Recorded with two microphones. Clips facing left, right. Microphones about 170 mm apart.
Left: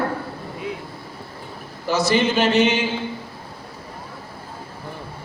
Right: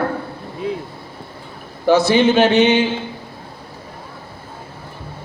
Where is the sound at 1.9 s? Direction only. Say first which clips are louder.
Right 6 dB; 60° right (ahead or behind).